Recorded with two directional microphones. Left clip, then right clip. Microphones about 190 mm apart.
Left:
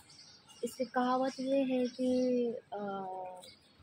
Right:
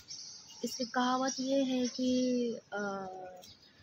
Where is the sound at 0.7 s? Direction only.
20° right (ahead or behind).